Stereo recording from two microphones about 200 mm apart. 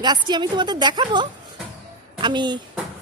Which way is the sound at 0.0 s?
20° right (ahead or behind).